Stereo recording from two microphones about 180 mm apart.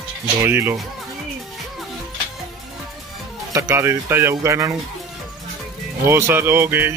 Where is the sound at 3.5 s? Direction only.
15° right (ahead or behind).